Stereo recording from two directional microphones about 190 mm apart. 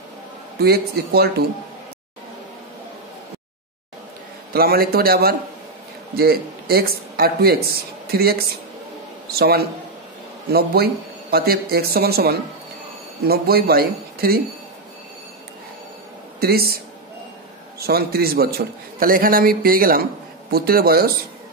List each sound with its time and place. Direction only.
0.6 s speech: 55° right (ahead or behind)
4.5 s a man's voice: 55° right (ahead or behind)
16.3 s a man's voice: 55° right (ahead or behind)